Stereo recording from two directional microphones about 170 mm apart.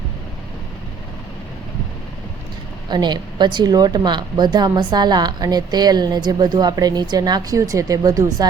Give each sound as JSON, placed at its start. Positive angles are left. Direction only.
{"t": 2.9, "sound": "a woman's voice", "side_deg": -25}